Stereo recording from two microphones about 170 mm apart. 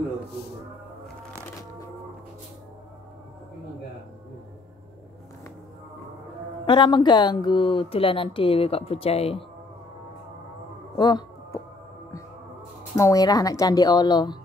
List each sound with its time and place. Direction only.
6.6 s speech: 30° left (ahead or behind)
11.0 s a sound: 25° left (ahead or behind)
12.9 s speech: 20° left (ahead or behind)